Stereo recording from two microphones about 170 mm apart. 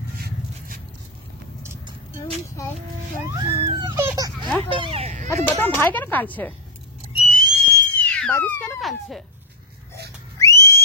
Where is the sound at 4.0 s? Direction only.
20° right (ahead or behind).